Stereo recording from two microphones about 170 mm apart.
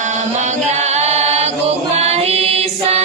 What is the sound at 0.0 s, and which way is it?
Chant, 45° right (ahead or behind).